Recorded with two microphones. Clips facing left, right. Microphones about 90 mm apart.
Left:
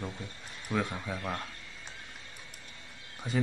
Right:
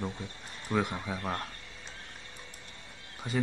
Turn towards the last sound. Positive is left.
turn(degrees=0)  # may be behind; listen again after turning